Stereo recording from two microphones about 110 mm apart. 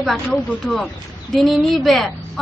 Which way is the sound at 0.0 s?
Centre (ahead or behind).